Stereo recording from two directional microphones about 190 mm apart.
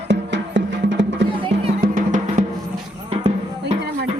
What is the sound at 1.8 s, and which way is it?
Music, 45° right (ahead or behind).